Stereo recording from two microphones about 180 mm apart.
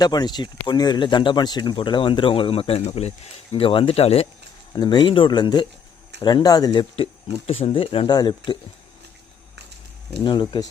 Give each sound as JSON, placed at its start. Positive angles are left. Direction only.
{"t": 0.0, "sound": "speech", "side_deg": 20}
{"t": 10.5, "sound": "speech", "side_deg": 25}